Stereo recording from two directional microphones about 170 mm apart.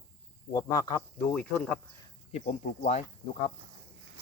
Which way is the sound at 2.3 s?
45° left (ahead or behind).